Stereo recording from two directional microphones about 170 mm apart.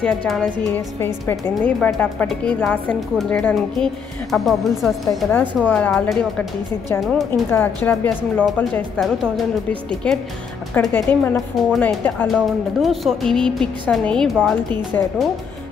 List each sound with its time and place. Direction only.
0.0 s speech: 5° left (ahead or behind)
1.0 s a woman's voice: 20° left (ahead or behind)
1.5 s a woman's voice: 5° left (ahead or behind)
7.5 s speech: 10° left (ahead or behind)
11.3 s a woman's voice: centre (ahead or behind)